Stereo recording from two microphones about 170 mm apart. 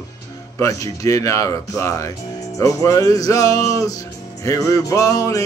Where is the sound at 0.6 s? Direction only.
20° left (ahead or behind).